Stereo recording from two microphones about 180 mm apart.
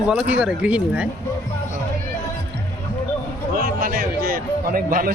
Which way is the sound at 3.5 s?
55° right (ahead or behind).